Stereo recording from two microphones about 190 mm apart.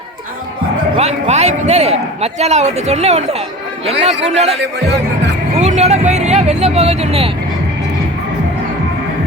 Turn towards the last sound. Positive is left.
turn(degrees=-30)  # may be behind; listen again after turning